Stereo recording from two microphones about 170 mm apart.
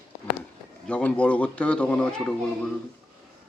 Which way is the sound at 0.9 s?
5° left (ahead or behind).